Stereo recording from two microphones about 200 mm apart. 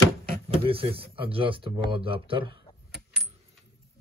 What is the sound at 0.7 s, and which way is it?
Speech, 30° right (ahead or behind).